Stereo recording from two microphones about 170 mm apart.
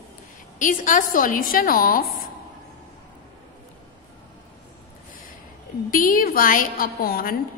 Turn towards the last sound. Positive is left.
turn(degrees=60)  # may be behind; listen again after turning